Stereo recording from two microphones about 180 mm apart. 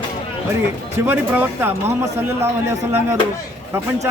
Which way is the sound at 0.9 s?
10° right (ahead or behind).